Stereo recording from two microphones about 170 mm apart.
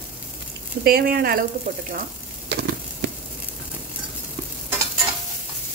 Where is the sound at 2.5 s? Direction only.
75° right (ahead or behind).